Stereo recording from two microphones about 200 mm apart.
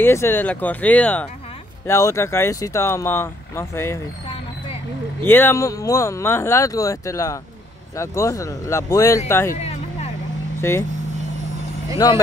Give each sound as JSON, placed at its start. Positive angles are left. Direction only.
{"t": 0.0, "sound": "speech", "side_deg": 10}
{"t": 5.2, "sound": "speech", "side_deg": 10}
{"t": 9.6, "sound": "music", "side_deg": 30}
{"t": 10.6, "sound": "speech", "side_deg": 15}
{"t": 12.0, "sound": "speech", "side_deg": 20}